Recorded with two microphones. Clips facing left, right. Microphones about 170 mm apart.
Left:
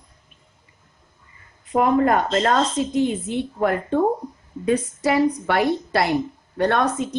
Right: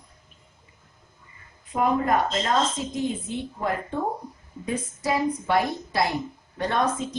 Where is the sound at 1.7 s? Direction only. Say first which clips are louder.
Left 5 dB; 65° left (ahead or behind).